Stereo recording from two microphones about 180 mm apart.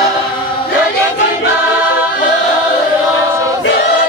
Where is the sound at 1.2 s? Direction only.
70° left (ahead or behind).